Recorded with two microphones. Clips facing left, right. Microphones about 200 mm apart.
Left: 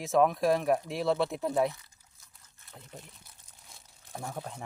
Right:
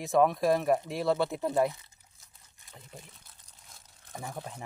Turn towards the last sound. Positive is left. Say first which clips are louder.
# left 1 dB
turn(degrees=0)  # may be behind; listen again after turning